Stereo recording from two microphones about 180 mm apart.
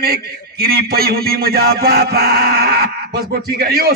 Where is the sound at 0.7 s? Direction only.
60° right (ahead or behind).